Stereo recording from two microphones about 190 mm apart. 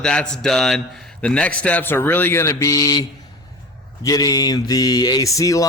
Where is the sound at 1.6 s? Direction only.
10° left (ahead or behind).